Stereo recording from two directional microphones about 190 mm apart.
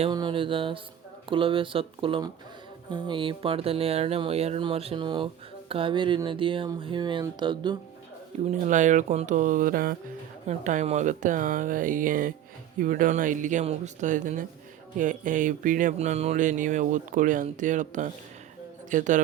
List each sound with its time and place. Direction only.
0.0 s speech: 25° right (ahead or behind)
8.4 s speech: 40° right (ahead or behind)
10.4 s speech: 40° right (ahead or behind)